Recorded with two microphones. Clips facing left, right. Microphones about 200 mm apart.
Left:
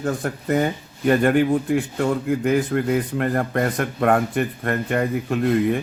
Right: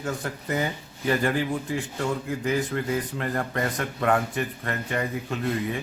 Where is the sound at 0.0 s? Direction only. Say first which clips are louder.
Left 6 dB; 50° left (ahead or behind).